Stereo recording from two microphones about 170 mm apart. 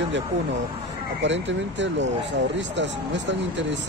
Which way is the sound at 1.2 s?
90° right.